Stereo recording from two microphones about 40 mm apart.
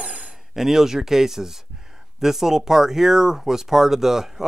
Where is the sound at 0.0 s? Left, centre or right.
Right.